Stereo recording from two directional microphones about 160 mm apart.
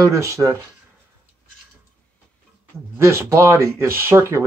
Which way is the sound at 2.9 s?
15° right (ahead or behind).